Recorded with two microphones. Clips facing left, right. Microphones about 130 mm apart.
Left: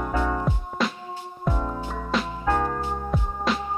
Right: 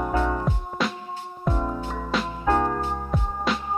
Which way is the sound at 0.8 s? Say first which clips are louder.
Left 1 dB; centre (ahead or behind).